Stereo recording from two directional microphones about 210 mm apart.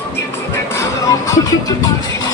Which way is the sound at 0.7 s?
15° left (ahead or behind).